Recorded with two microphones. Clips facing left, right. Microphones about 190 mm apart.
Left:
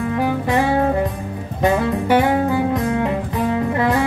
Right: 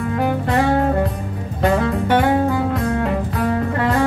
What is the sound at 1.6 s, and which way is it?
Music, 10° left (ahead or behind).